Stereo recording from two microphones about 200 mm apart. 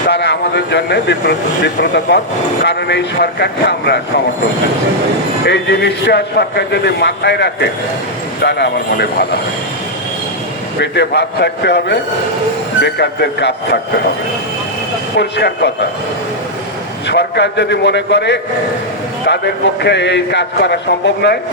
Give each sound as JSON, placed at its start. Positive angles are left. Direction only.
{"t": 0.1, "sound": "a man's voice", "side_deg": 55}
{"t": 5.5, "sound": "a man's voice", "side_deg": 55}
{"t": 10.8, "sound": "a man's voice", "side_deg": 55}
{"t": 15.1, "sound": "a man's voice", "side_deg": 55}
{"t": 17.1, "sound": "a man's voice", "side_deg": 60}